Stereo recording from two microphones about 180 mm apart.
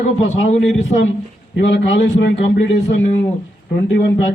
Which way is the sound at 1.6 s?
85° left.